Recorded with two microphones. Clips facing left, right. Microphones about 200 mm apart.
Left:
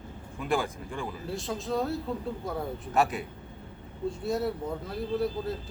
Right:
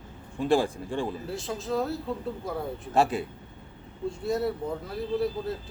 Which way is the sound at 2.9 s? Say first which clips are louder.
Right 3 dB; 30° right (ahead or behind).